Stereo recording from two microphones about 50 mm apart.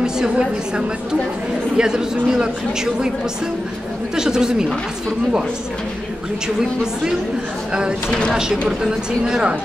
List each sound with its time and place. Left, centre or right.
1.8 s a man's voice: centre
4.2 s a man's voice: centre
8.1 s speech: centre
8.4 s a man's voice: centre